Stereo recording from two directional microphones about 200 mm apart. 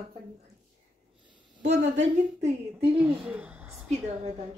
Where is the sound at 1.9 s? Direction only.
30° right (ahead or behind).